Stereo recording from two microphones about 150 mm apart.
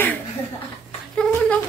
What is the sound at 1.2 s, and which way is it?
Speech, 5° left (ahead or behind).